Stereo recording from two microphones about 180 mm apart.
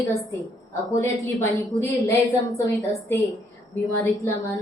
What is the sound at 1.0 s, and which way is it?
A woman's voice, 15° left (ahead or behind).